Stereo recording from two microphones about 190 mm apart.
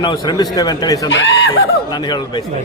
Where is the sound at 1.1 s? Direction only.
75° left (ahead or behind).